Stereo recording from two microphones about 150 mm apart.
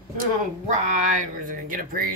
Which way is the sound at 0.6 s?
55° right (ahead or behind).